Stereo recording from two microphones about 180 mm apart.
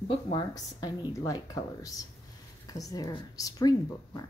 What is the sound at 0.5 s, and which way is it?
Speech, 20° left (ahead or behind).